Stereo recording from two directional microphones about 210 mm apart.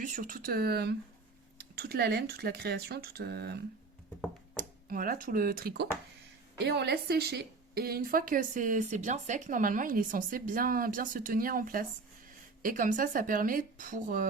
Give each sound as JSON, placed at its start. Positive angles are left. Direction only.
{"t": 0.0, "sound": "a woman's voice", "side_deg": -40}